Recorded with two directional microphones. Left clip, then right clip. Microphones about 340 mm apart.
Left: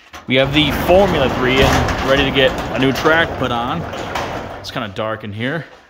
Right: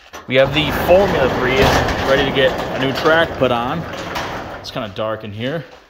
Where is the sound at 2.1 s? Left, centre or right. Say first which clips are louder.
Left 1 dB; centre.